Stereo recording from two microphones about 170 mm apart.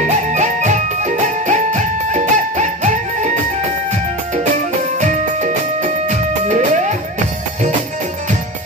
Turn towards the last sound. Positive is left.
turn(degrees=-45)  # may be behind; listen again after turning